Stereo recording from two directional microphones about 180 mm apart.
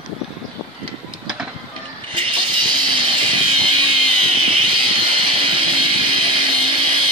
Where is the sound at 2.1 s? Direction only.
25° right (ahead or behind).